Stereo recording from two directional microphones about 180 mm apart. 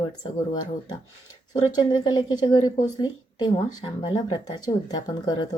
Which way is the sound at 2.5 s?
20° left (ahead or behind).